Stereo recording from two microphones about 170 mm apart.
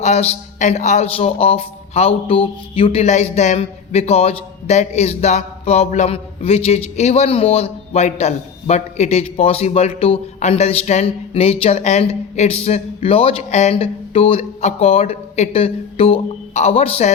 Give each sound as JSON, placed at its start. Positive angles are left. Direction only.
{"t": 0.0, "sound": "speech", "side_deg": 40}